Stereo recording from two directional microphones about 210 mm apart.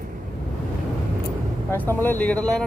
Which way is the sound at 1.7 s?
10° left (ahead or behind).